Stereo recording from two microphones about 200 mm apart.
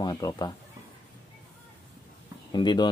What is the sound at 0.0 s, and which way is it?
Speech, 20° left (ahead or behind).